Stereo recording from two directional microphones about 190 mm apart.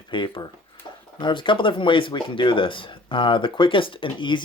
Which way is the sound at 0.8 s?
25° left (ahead or behind).